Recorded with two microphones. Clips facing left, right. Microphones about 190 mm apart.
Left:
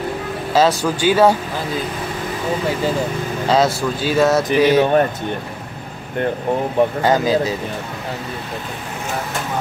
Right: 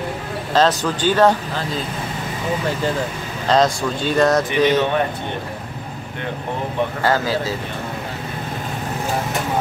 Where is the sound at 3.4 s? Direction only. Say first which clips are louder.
Even; 5° left (ahead or behind).